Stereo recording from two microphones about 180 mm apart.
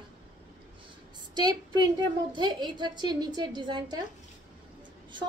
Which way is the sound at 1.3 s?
25° right (ahead or behind).